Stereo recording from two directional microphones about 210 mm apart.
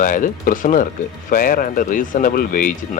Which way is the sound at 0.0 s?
40° left (ahead or behind).